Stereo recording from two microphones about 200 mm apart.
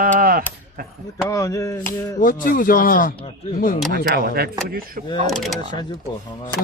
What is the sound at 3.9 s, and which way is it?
Speech, 50° right (ahead or behind).